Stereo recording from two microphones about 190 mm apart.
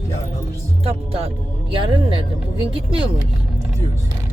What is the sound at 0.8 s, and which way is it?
Speech, 30° right (ahead or behind).